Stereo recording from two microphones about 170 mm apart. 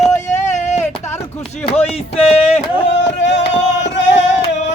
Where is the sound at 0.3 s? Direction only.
45° left (ahead or behind).